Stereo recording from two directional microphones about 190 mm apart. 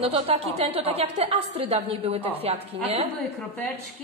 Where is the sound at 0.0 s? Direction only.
30° right (ahead or behind).